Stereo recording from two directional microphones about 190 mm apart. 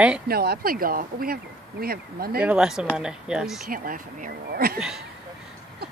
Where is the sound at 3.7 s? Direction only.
45° right (ahead or behind).